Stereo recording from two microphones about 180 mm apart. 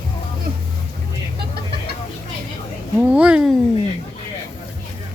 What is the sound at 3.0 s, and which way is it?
Speech, 5° right (ahead or behind).